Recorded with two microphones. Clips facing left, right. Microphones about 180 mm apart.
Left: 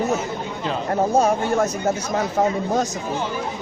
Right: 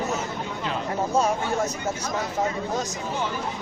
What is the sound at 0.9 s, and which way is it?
Speech, 50° left (ahead or behind).